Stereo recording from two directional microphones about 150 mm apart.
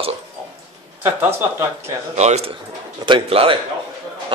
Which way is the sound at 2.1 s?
45° right (ahead or behind).